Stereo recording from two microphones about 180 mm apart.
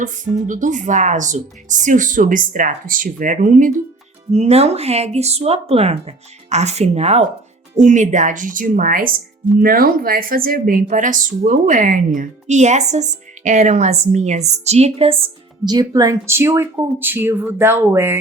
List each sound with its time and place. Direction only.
0.0 s a woman's voice: 45° right (ahead or behind)
15.6 s speech: 20° right (ahead or behind)